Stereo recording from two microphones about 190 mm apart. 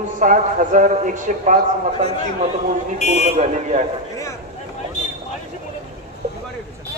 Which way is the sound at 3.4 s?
35° right (ahead or behind).